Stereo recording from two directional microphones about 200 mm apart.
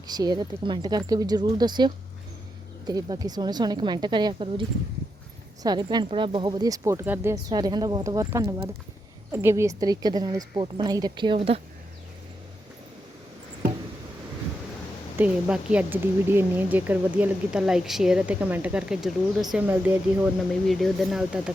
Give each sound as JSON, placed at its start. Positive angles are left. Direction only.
{"t": 0.1, "sound": "speech", "side_deg": -20}
{"t": 5.6, "sound": "speech", "side_deg": -20}
{"t": 15.2, "sound": "speech", "side_deg": -5}